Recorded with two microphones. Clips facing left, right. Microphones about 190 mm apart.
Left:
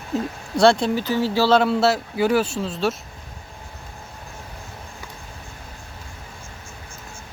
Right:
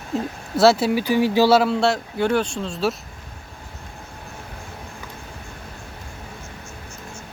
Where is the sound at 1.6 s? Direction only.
Centre (ahead or behind).